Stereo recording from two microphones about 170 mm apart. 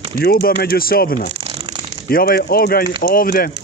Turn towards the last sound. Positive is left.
turn(degrees=60)  # may be behind; listen again after turning